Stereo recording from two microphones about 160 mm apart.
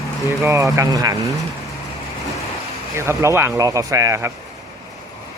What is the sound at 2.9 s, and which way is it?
Speech, 15° right (ahead or behind).